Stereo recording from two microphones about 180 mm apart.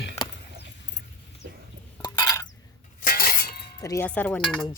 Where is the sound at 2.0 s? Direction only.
20° left (ahead or behind).